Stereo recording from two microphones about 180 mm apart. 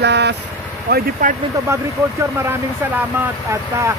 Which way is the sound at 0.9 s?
55° right (ahead or behind).